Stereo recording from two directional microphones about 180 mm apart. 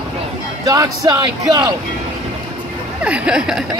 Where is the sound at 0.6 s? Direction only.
20° right (ahead or behind).